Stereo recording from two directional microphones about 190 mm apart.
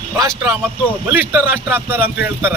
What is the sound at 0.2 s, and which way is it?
Speech, 15° right (ahead or behind).